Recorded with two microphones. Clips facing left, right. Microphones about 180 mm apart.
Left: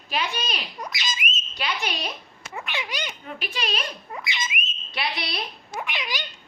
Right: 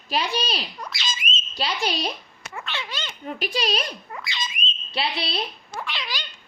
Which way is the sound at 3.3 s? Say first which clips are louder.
Right 5 dB; 40° right (ahead or behind).